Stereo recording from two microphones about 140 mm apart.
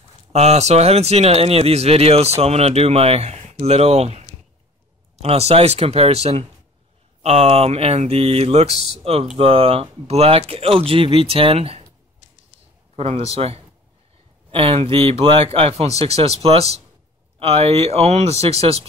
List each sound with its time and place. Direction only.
0.3 s speech: 50° right (ahead or behind)
12.9 s a man's voice: 50° right (ahead or behind)